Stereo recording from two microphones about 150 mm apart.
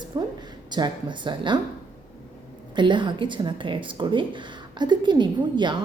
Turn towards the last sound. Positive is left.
turn(degrees=-30)  # may be behind; listen again after turning